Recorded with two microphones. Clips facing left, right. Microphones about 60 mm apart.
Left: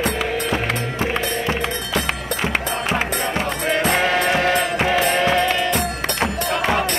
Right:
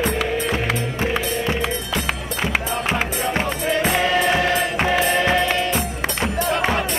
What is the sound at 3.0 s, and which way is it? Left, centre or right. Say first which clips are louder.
Music: even; left.